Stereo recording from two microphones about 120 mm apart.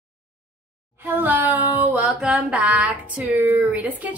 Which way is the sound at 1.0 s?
15° right (ahead or behind).